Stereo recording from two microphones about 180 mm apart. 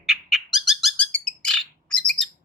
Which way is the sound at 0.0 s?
Centre (ahead or behind).